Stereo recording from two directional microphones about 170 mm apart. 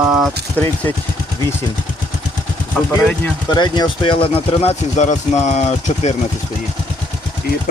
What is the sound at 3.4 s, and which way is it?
Speech, 25° left (ahead or behind).